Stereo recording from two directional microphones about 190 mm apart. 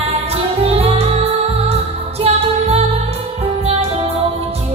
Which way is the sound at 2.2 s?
30° right (ahead or behind).